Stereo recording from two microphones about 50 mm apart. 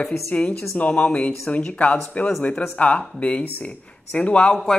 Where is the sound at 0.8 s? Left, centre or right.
Left.